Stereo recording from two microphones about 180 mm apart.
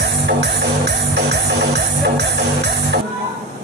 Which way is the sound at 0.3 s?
70° right (ahead or behind).